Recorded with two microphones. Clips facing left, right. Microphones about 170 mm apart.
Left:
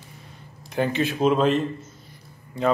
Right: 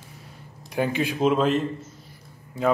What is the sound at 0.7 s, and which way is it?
A man's voice, 10° right (ahead or behind).